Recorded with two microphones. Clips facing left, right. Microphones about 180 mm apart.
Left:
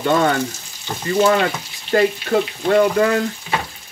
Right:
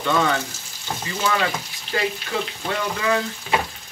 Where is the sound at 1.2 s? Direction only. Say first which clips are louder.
Left 6 dB; 50° left (ahead or behind).